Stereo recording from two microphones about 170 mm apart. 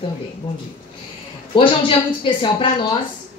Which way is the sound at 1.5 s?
30° left (ahead or behind).